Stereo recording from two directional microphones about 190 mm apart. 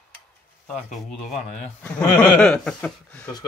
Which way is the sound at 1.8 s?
10° left (ahead or behind).